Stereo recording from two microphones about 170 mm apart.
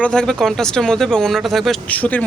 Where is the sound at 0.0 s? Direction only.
5° left (ahead or behind).